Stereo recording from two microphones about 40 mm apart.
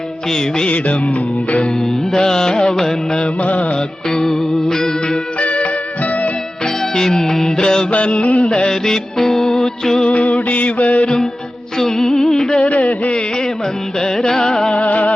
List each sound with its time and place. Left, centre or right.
0.3 s music: centre
1.8 s music: centre
3.4 s music: left
4.1 s music: centre
5.4 s music: left
7.2 s music: centre
7.9 s a sound: left
8.5 s music: centre
10.1 s a sound: left
10.5 s mantra: left
11.9 s music: centre
12.6 s a sound: left
14.0 s music: centre
14.8 s music: left